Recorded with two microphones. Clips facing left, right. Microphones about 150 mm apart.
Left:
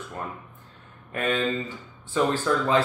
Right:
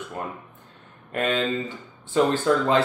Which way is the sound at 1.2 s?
20° right (ahead or behind).